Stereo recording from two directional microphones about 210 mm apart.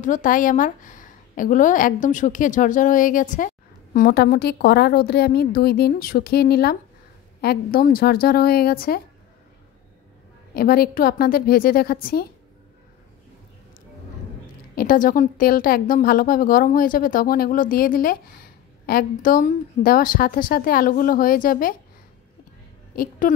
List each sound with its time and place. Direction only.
0.0 s a woman's voice: 40° left (ahead or behind)
10.5 s a woman's voice: 45° left (ahead or behind)
14.8 s a woman's voice: 40° left (ahead or behind)
22.9 s a woman's voice: 40° left (ahead or behind)